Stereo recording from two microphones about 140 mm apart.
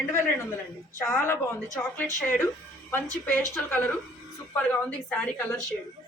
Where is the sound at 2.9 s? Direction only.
15° left (ahead or behind).